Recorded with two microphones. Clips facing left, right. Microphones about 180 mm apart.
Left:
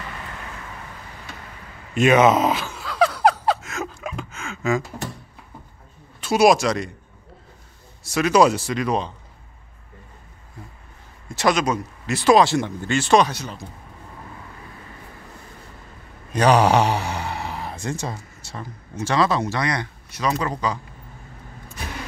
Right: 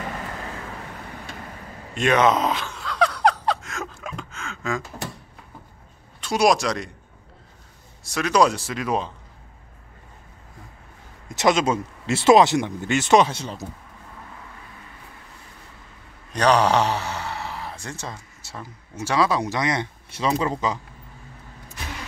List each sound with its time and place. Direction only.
2.0 s a sound: 5° left (ahead or behind)
6.2 s speech: 5° left (ahead or behind)
8.0 s speech: centre (ahead or behind)
11.2 s speech: 20° right (ahead or behind)
16.3 s a sound: 10° left (ahead or behind)
17.8 s speech: 15° left (ahead or behind)
18.4 s speech: 5° right (ahead or behind); by 20.8 s 20° right (ahead or behind)